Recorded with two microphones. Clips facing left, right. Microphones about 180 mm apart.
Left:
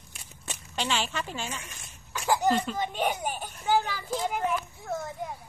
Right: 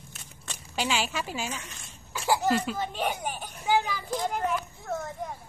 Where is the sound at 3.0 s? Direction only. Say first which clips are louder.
Left 2 dB; 10° left (ahead or behind).